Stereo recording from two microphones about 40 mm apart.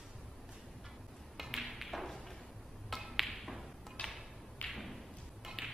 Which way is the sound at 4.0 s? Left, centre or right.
Left.